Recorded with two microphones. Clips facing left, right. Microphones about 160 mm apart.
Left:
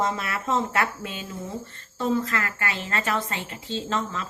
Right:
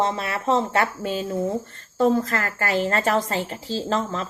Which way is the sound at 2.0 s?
45° right (ahead or behind).